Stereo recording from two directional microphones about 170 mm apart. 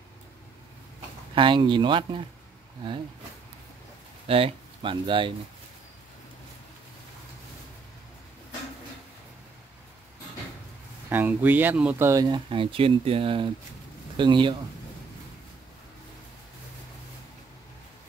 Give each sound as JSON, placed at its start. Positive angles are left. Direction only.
{"t": 1.3, "sound": "speech", "side_deg": -30}
{"t": 4.3, "sound": "speech", "side_deg": -30}
{"t": 11.1, "sound": "speech", "side_deg": -10}